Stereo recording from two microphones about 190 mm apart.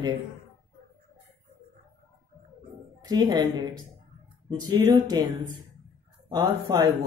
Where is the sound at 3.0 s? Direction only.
20° right (ahead or behind).